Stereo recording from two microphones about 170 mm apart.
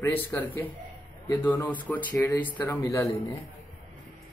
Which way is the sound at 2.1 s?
15° left (ahead or behind).